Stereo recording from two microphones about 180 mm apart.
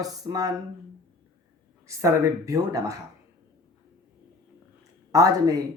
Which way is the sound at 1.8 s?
15° right (ahead or behind).